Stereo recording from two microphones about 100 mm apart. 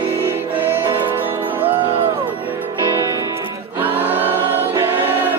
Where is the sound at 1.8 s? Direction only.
65° right (ahead or behind).